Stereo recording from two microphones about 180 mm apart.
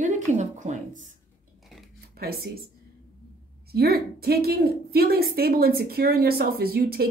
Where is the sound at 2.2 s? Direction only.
55° right (ahead or behind).